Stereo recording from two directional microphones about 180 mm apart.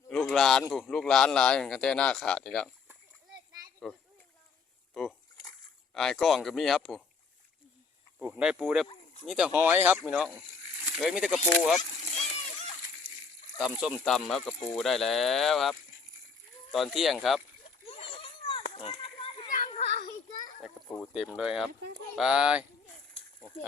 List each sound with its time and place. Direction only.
0.1 s a sound: centre (ahead or behind)
0.7 s speech: 5° left (ahead or behind)
3.9 s speech: 5° left (ahead or behind)
8.2 s speech: 5° right (ahead or behind)
13.6 s speech: 5° right (ahead or behind)
16.7 s speech: centre (ahead or behind)
17.8 s a sound: 30° left (ahead or behind)
18.7 s children playing: 30° left (ahead or behind)
19.5 s children playing: 50° left (ahead or behind)
20.7 s speech: 5° left (ahead or behind)
23.2 s snake: 35° left (ahead or behind)